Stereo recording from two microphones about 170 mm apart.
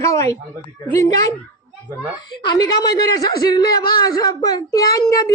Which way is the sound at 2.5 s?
20° left (ahead or behind).